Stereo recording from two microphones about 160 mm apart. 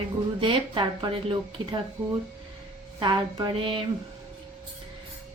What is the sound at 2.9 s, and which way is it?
Speech, 30° right (ahead or behind).